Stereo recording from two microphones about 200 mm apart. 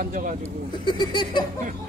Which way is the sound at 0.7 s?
20° left (ahead or behind).